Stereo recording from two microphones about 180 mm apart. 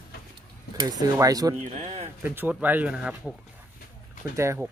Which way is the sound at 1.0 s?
20° right (ahead or behind).